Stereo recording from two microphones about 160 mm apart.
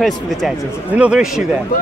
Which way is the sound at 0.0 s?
Centre (ahead or behind).